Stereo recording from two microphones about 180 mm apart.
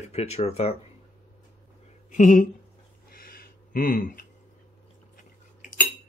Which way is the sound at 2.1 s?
45° left (ahead or behind).